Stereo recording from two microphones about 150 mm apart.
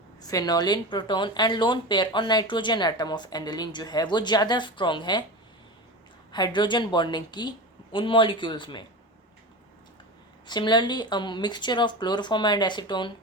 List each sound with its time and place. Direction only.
0.2 s speech: 25° left (ahead or behind)
6.3 s speech: 30° left (ahead or behind)
10.4 s speech: 30° left (ahead or behind)